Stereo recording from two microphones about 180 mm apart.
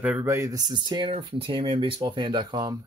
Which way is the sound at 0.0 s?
10° right (ahead or behind).